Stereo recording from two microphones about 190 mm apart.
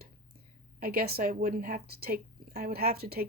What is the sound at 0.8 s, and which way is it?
Speech, 50° right (ahead or behind).